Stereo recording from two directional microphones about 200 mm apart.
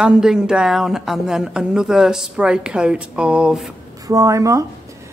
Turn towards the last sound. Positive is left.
turn(degrees=-15)  # may be behind; listen again after turning